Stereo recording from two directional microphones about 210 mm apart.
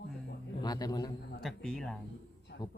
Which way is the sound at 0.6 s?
20° left (ahead or behind).